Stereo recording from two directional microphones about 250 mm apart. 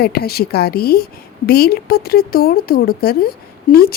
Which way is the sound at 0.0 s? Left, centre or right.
Left.